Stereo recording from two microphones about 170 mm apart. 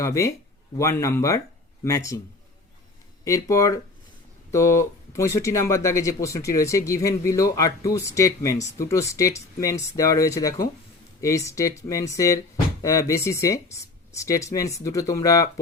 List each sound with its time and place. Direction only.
0.0 s speech: 15° left (ahead or behind)
3.2 s speech: 20° left (ahead or behind)